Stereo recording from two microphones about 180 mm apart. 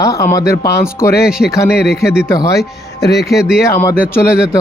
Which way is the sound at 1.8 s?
60° left (ahead or behind).